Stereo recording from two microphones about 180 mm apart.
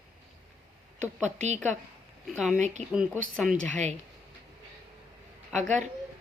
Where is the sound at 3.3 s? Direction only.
Centre (ahead or behind).